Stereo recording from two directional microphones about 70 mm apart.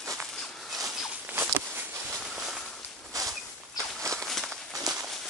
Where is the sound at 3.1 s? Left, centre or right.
Right.